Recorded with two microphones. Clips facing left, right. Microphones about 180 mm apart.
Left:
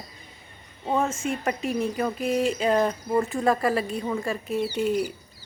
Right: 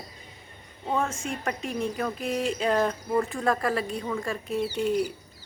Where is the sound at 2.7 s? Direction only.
15° left (ahead or behind).